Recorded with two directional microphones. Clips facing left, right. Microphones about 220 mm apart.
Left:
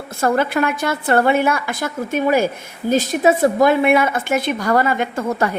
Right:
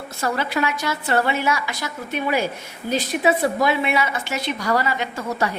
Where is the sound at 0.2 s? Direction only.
50° left (ahead or behind).